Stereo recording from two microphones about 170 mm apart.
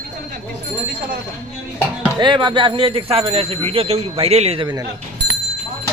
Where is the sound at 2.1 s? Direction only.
25° right (ahead or behind).